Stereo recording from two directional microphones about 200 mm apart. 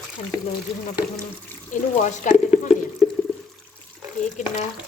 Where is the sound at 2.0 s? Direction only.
35° left (ahead or behind).